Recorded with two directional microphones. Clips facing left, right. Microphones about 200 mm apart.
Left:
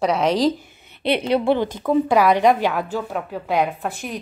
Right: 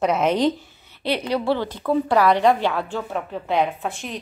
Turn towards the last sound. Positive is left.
turn(degrees=5)  # may be behind; listen again after turning